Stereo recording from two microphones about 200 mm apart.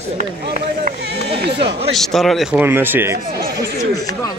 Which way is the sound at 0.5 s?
30° right (ahead or behind).